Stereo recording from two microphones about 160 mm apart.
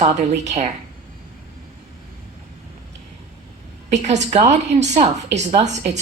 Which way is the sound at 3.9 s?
45° right (ahead or behind).